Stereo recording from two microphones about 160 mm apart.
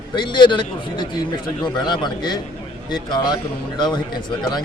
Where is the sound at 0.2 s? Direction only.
30° left (ahead or behind).